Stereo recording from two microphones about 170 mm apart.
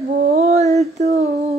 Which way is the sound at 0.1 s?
55° right (ahead or behind).